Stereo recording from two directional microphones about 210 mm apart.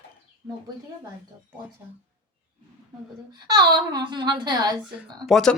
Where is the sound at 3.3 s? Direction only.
20° right (ahead or behind).